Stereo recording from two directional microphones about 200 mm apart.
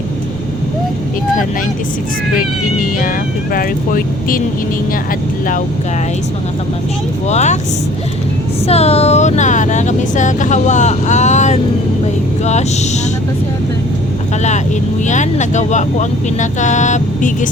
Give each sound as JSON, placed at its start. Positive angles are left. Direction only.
{"t": 3.5, "sound": "speech", "side_deg": 45}
{"t": 7.3, "sound": "speech", "side_deg": 35}
{"t": 8.6, "sound": "speech", "side_deg": 30}
{"t": 15.0, "sound": "speech", "side_deg": 35}